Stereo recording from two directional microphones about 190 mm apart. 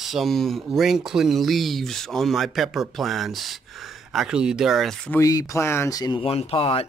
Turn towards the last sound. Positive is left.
turn(degrees=30)  # may be behind; listen again after turning